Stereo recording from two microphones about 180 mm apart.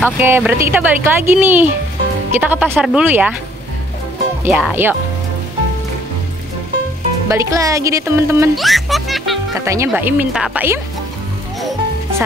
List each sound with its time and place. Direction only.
0.0 s speech: 10° right (ahead or behind)
4.5 s speech: 5° right (ahead or behind)
7.2 s speech: 15° right (ahead or behind)
8.5 s a child's voice: centre (ahead or behind)
9.7 s speech: 15° right (ahead or behind)